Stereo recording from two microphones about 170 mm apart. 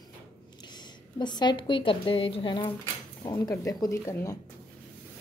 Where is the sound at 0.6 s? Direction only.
25° left (ahead or behind).